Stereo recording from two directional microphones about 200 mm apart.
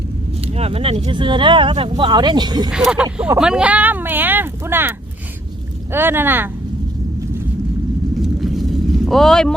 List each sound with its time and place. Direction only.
0.4 s speech: 30° right (ahead or behind)
2.6 s speech: 5° right (ahead or behind)
8.2 s vehicle: centre (ahead or behind)
9.0 s speech: centre (ahead or behind)